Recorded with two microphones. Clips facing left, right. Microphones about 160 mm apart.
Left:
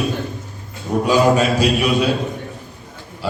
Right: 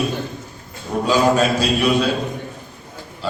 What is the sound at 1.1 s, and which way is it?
A man's voice, 10° left (ahead or behind).